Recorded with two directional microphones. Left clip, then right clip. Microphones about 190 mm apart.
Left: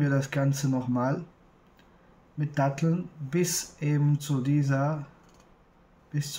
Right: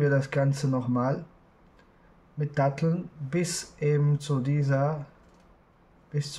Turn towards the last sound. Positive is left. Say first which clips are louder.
# even
turn(degrees=-35)  # may be behind; listen again after turning